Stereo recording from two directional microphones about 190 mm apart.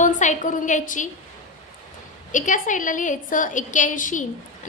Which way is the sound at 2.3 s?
40° left (ahead or behind).